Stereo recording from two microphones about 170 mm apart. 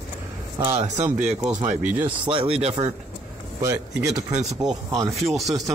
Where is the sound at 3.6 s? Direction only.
20° right (ahead or behind).